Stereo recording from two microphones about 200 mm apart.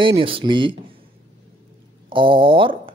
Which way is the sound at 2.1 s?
25° right (ahead or behind).